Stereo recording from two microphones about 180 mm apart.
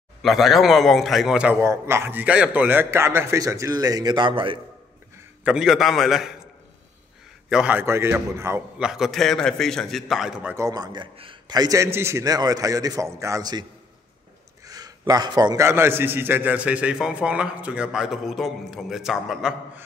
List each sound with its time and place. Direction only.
0.2 s a man's voice: centre (ahead or behind); by 4.6 s 30° right (ahead or behind)
5.4 s a man's voice: 5° right (ahead or behind)
7.4 s a man's voice: 5° right (ahead or behind)
10.5 s a man's voice: 20° right (ahead or behind)
14.7 s a man's voice: 20° right (ahead or behind); by 19.8 s centre (ahead or behind)